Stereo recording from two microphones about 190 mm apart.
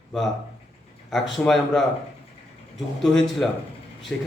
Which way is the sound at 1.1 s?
Centre (ahead or behind).